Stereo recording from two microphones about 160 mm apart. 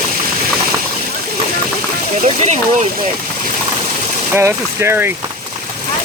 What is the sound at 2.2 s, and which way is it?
Speech, 50° right (ahead or behind).